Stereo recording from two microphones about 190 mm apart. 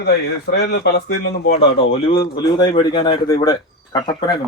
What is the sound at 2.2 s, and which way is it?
Speech, 20° left (ahead or behind).